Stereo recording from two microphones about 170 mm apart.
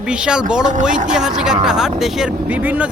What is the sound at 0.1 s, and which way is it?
Speech, 5° right (ahead or behind).